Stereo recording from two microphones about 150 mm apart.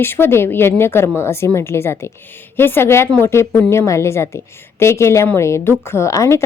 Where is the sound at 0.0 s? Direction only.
15° left (ahead or behind).